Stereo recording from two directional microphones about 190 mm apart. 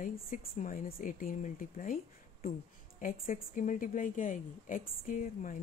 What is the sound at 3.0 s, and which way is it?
Speech, 45° left (ahead or behind).